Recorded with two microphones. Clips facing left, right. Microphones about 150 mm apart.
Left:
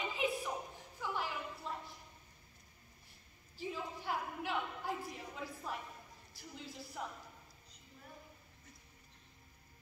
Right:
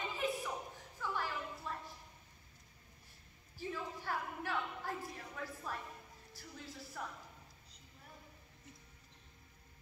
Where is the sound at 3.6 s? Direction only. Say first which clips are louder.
Left 1 dB; 15° left (ahead or behind).